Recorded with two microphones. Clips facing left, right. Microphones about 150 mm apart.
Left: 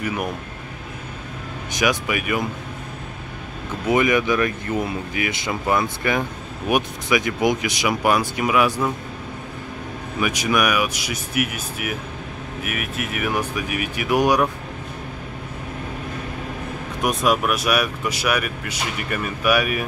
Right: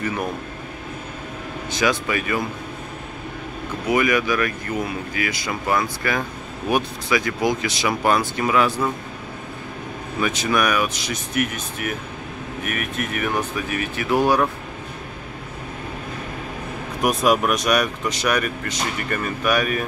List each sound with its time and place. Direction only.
1.7 s speech: 15° left (ahead or behind)
3.8 s speech: 20° left (ahead or behind)
10.2 s speech: 10° left (ahead or behind)
17.0 s speech: centre (ahead or behind)